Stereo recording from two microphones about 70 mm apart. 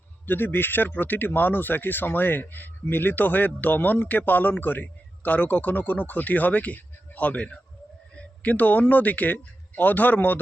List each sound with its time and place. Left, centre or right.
0.3 s a man's voice: left